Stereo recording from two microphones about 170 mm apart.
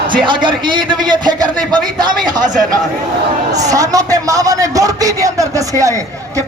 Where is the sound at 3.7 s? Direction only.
20° right (ahead or behind).